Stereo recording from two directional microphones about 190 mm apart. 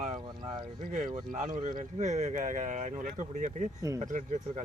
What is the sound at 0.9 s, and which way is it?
Speech, 45° right (ahead or behind).